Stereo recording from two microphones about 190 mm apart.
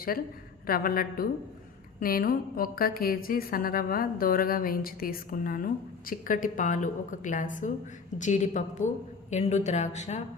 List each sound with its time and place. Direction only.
0.7 s a woman's voice: 50° left (ahead or behind)